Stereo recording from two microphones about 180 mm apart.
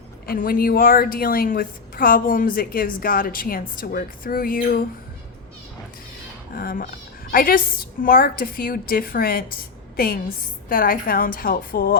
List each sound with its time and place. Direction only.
0.3 s a woman's voice: 55° left (ahead or behind)
6.6 s a woman's voice: 50° left (ahead or behind)